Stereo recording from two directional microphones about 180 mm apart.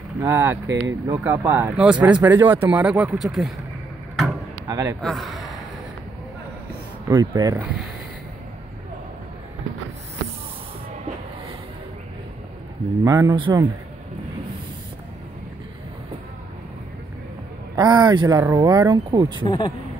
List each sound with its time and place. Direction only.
0.2 s speech: 15° right (ahead or behind)
4.6 s a man's voice: 20° right (ahead or behind)
5.0 s a man's voice: centre (ahead or behind)
7.1 s speech: 20° right (ahead or behind)
13.0 s speech: 20° right (ahead or behind)
17.7 s speech: 25° right (ahead or behind)
19.4 s speech: 25° left (ahead or behind)